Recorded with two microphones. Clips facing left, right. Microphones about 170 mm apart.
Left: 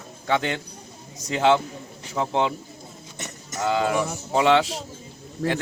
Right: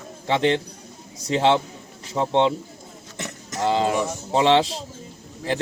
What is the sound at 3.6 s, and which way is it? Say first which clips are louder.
Speech: right 2 dB; 25° right (ahead or behind).